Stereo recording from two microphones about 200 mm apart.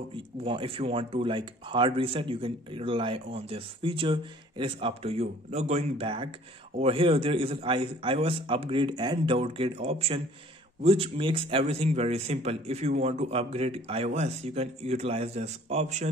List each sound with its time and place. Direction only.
0.1 s speech: 25° right (ahead or behind)